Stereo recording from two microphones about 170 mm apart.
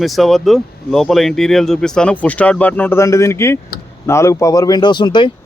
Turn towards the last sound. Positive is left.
turn(degrees=25)  # may be behind; listen again after turning